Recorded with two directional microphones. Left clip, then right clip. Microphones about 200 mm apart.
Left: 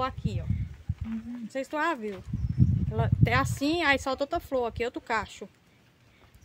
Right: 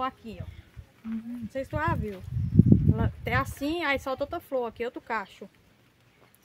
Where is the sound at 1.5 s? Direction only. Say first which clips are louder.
Left 1 dB; 40° left (ahead or behind).